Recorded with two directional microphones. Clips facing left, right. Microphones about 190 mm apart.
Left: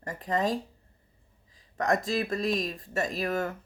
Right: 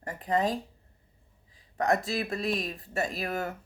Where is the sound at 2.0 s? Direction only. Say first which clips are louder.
Left 2 dB; 40° left (ahead or behind).